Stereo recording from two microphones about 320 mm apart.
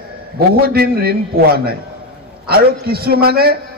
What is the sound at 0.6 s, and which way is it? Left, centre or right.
A man's voice, right.